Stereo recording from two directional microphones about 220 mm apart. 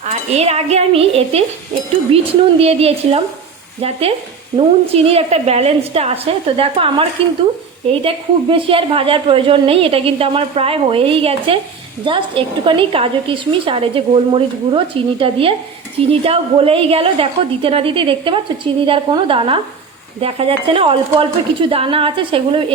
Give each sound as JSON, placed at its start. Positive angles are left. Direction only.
{"t": 0.1, "sound": "a woman's voice", "side_deg": -30}
{"t": 12.6, "sound": "a woman's voice", "side_deg": -25}